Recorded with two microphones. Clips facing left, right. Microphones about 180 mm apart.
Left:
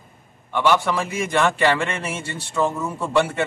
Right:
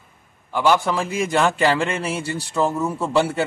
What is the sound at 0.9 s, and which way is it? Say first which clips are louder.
A man's voice: right 1 dB; 35° right (ahead or behind).